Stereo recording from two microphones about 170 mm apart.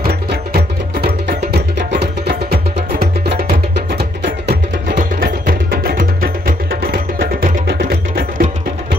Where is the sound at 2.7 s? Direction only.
60° right (ahead or behind).